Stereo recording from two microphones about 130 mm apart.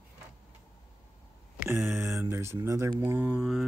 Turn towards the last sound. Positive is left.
turn(degrees=-5)  # may be behind; listen again after turning